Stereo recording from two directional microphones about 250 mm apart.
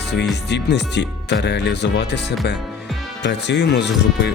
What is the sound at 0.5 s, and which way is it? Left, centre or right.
Speech, left.